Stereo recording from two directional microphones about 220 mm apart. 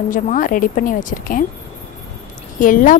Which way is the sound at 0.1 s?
35° left (ahead or behind).